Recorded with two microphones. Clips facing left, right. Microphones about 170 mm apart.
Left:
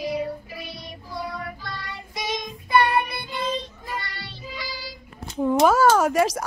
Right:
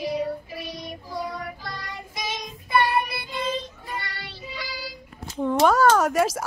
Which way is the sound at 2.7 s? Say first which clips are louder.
Left 2 dB; 5° right (ahead or behind).